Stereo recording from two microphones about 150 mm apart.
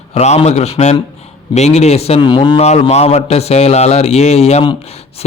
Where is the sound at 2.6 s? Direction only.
45° left (ahead or behind).